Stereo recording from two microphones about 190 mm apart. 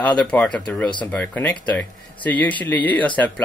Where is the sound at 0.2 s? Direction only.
5° left (ahead or behind).